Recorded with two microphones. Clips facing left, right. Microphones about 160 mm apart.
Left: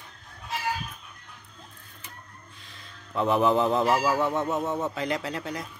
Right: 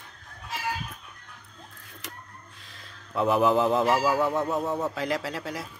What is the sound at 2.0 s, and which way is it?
Printer, 90° right.